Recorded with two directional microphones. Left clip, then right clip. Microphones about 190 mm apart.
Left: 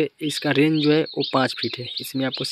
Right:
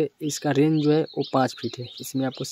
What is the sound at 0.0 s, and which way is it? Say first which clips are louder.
Speech: left 2 dB; centre (ahead or behind).